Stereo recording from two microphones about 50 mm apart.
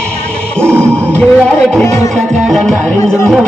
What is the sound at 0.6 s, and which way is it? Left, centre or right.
Music, right.